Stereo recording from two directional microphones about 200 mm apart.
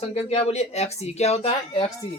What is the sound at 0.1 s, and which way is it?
Speech, 30° left (ahead or behind).